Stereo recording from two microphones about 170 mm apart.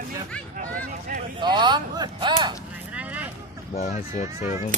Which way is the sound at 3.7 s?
45° left (ahead or behind).